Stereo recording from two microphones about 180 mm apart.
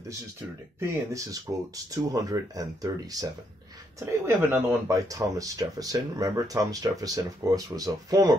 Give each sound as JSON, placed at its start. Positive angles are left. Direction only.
{"t": 0.7, "sound": "speech", "side_deg": -20}